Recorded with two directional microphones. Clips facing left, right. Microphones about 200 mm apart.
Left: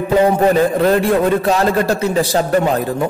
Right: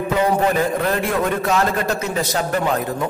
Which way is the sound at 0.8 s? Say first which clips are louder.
Left 7 dB; 35° left (ahead or behind).